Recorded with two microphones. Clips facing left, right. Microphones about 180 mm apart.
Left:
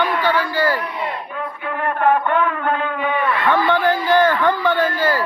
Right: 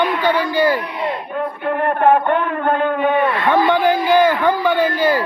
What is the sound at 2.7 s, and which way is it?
Speech, 50° right (ahead or behind).